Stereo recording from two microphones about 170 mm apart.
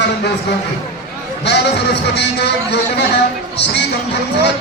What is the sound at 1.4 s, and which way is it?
A man's voice, 90° left.